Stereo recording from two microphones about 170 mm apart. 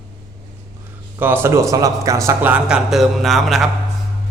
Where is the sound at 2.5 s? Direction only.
5° right (ahead or behind).